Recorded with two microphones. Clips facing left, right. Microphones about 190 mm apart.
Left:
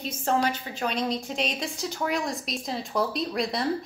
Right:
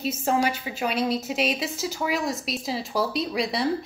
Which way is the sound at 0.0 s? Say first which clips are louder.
Right 2 dB; 5° right (ahead or behind).